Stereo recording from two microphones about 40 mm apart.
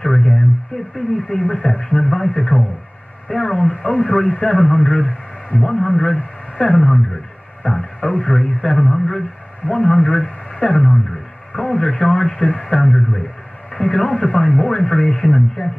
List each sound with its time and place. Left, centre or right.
0.0 s radio: centre
0.9 s a man's voice: centre
3.3 s radio: centre
3.9 s speech: left
5.6 s a man's voice: centre
6.6 s speech: left
8.8 s a man's voice: centre
9.7 s speech: left
10.5 s a sound: left
10.9 s a sound: centre
11.6 s a man's voice: left
13.7 s a man's voice: left